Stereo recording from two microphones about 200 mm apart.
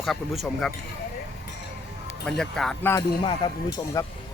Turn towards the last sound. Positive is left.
turn(degrees=15)  # may be behind; listen again after turning